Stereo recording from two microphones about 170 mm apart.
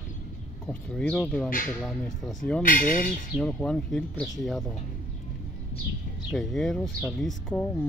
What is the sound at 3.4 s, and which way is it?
Speech, 5° left (ahead or behind).